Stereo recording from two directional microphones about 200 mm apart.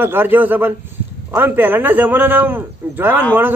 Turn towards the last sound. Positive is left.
turn(degrees=-10)  # may be behind; listen again after turning